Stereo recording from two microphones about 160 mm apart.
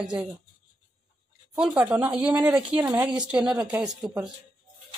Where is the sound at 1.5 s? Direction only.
5° right (ahead or behind).